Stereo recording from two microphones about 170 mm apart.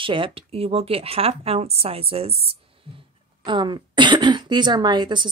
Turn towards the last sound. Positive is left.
turn(degrees=-25)  # may be behind; listen again after turning